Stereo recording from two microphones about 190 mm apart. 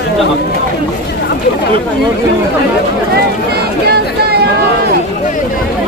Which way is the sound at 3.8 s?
55° right (ahead or behind).